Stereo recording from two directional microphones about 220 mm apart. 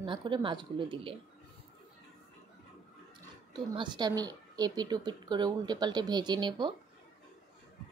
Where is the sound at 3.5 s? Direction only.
20° right (ahead or behind).